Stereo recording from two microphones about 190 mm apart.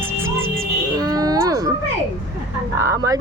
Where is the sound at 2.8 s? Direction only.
15° right (ahead or behind).